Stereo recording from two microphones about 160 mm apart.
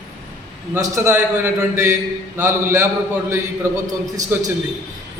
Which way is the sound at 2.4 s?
15° right (ahead or behind).